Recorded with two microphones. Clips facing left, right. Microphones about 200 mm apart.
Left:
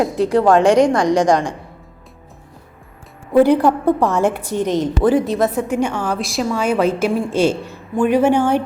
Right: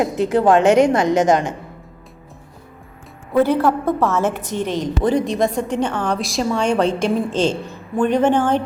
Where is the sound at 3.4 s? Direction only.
15° left (ahead or behind).